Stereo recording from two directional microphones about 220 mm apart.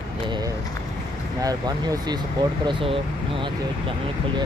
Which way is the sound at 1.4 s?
15° right (ahead or behind).